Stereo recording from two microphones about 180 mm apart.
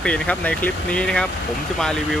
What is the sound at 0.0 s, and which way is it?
Speech, 5° left (ahead or behind).